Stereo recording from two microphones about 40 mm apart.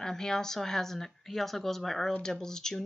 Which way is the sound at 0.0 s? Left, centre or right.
Centre.